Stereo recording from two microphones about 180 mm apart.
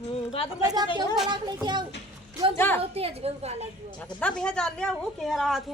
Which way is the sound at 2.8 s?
35° right (ahead or behind).